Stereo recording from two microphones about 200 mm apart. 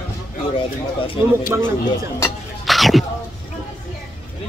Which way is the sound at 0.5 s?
25° left (ahead or behind).